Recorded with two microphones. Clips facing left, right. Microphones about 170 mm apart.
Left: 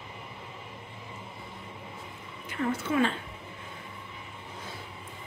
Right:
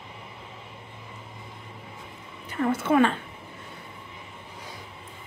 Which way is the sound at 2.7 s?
65° right (ahead or behind).